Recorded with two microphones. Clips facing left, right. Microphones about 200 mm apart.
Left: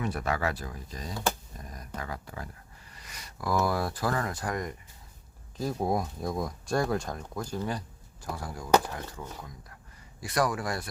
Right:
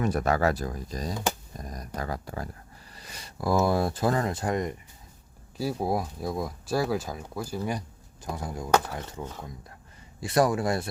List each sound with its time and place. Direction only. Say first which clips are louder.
0.0 s speech: right 6 dB; 45° right (ahead or behind)
1.5 s a sound: right 5 dB; 40° right (ahead or behind)
2.0 s speech: right 5 dB; 40° right (ahead or behind); by 4.8 s 20° right (ahead or behind)
5.5 s speech: right 1 dB; 5° right (ahead or behind); by 10.8 s 25° right (ahead or behind)